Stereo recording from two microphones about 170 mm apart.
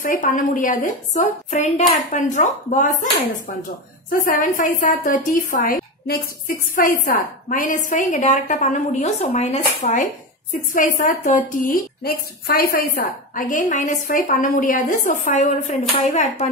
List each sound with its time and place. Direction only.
0.0 s a woman's voice: 55° left (ahead or behind)
4.1 s a woman's voice: 55° left (ahead or behind)